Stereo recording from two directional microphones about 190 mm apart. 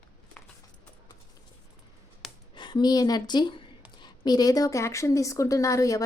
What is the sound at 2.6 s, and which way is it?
A woman's voice, 25° left (ahead or behind).